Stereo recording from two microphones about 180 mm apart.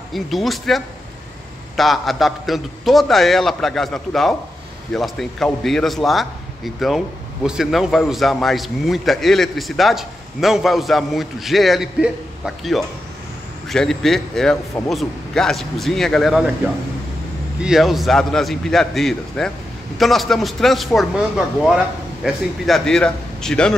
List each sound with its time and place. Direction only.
0.1 s a man's voice: centre (ahead or behind)
17.6 s a man's voice: centre (ahead or behind)
22.2 s a man's voice: centre (ahead or behind)